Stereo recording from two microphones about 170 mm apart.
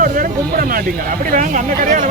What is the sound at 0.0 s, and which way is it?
Speech, 55° right (ahead or behind).